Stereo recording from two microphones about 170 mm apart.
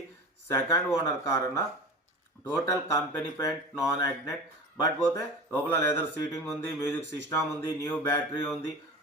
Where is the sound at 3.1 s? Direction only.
15° left (ahead or behind).